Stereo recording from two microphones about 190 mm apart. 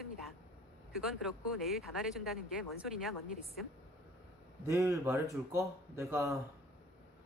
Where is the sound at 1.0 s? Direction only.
Centre (ahead or behind).